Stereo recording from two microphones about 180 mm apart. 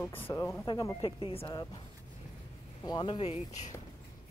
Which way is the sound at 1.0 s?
30° left (ahead or behind).